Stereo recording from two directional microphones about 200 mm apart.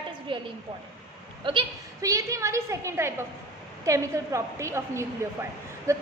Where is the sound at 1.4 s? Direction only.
20° right (ahead or behind).